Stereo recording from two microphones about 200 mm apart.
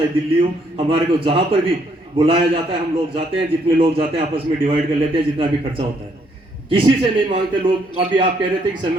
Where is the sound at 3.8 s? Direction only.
25° right (ahead or behind).